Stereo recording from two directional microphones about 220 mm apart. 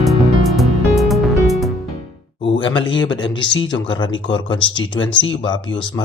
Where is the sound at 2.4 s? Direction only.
20° left (ahead or behind).